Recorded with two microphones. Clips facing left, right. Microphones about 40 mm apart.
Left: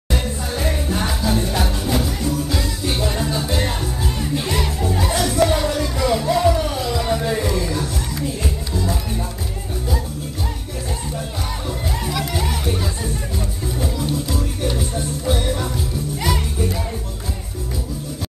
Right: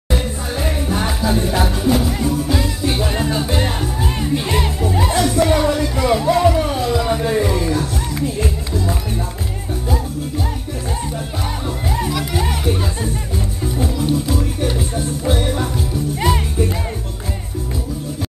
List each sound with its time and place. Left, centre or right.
0.1 s music: centre
7.0 s a sound: centre
8.4 s music: right
12.1 s music: centre; by 16.7 s right